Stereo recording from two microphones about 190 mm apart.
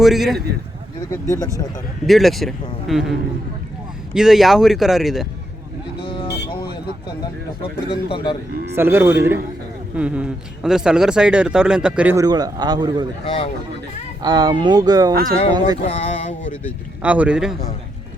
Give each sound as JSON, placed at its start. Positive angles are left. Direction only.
{"t": 0.0, "sound": "speech", "side_deg": 0}
{"t": 1.1, "sound": "speech", "side_deg": 15}
{"t": 2.0, "sound": "speech", "side_deg": 0}
{"t": 6.2, "sound": "vehicle", "side_deg": 60}
{"t": 7.6, "sound": "a man's voice", "side_deg": 25}
{"t": 8.7, "sound": "a man's voice", "side_deg": -10}
{"t": 12.1, "sound": "a man's voice", "side_deg": -20}
{"t": 13.2, "sound": "a man's voice", "side_deg": 30}
{"t": 14.2, "sound": "a man's voice", "side_deg": -20}
{"t": 15.1, "sound": "speech", "side_deg": -50}
{"t": 15.9, "sound": "speech", "side_deg": 35}
{"t": 17.0, "sound": "speech", "side_deg": -5}